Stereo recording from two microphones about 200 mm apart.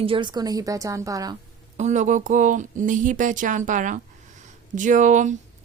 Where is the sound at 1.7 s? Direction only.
35° right (ahead or behind).